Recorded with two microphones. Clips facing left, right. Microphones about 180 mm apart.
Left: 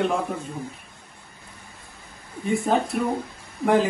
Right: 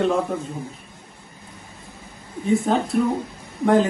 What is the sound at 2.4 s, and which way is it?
Speech, centre (ahead or behind).